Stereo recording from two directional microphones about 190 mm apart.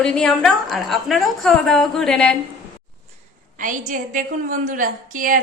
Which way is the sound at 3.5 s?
45° right (ahead or behind).